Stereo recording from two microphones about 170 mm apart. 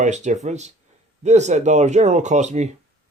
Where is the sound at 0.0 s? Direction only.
45° right (ahead or behind).